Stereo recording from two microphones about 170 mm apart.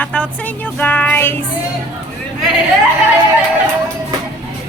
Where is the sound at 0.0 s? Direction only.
5° left (ahead or behind).